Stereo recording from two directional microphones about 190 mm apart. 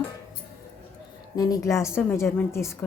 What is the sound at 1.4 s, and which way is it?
Speech, 20° left (ahead or behind).